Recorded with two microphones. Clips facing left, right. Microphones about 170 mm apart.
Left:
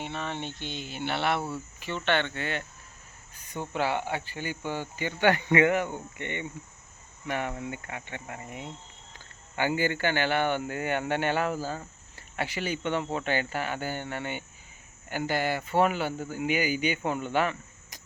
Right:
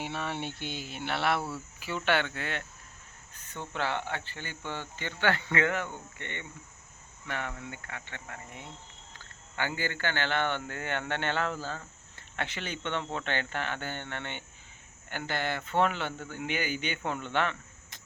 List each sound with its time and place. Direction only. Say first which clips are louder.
0.0 s speech: even; 10° right (ahead or behind)
3.3 s speech: left 5 dB; 10° left (ahead or behind)